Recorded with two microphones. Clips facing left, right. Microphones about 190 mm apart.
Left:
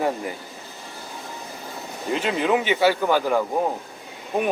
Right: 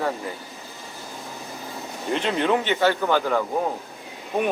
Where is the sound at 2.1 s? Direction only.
5° left (ahead or behind).